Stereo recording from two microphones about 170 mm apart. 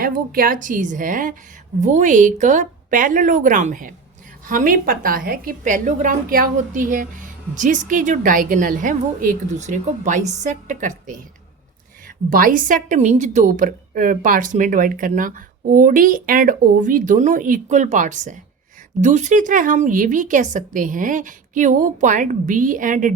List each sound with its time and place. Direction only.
0.0 s a woman's voice: 55° right (ahead or behind)